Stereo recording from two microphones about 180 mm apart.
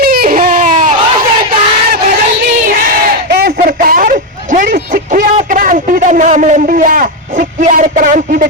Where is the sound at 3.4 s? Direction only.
50° right (ahead or behind).